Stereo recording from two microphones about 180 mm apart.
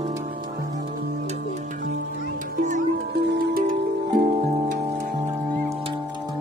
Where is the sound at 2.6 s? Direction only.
45° right (ahead or behind).